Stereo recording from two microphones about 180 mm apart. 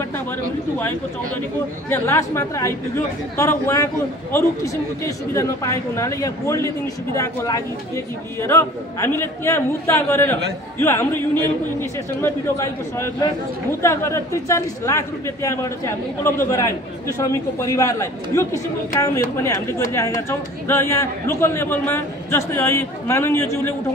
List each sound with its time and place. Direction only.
1.9 s a man's voice: 15° left (ahead or behind)